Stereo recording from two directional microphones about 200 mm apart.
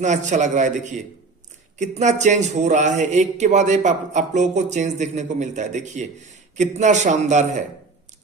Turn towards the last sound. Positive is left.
turn(degrees=-35)  # may be behind; listen again after turning